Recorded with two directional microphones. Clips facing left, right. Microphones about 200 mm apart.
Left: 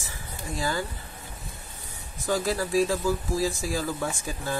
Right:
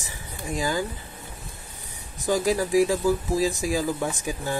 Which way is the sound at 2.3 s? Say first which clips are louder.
Right 4 dB; 15° right (ahead or behind).